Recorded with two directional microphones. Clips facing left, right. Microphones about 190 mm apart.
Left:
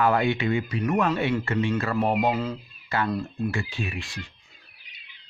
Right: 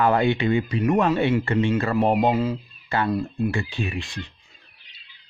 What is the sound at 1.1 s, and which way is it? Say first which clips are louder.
Speech: right 4 dB; 20° right (ahead or behind).